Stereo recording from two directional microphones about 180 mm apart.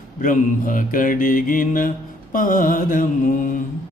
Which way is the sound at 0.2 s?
50° left (ahead or behind).